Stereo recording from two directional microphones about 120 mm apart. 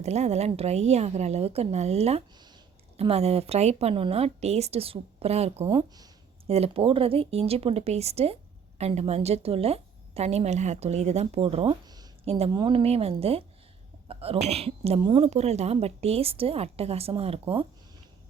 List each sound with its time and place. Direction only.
0.0 s speech: 65° right (ahead or behind)
12.5 s speech: 45° right (ahead or behind)